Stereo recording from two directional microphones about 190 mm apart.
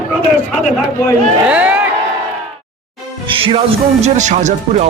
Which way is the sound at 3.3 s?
30° right (ahead or behind).